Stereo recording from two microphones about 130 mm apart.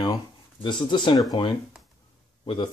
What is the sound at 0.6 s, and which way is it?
Speech, 40° left (ahead or behind).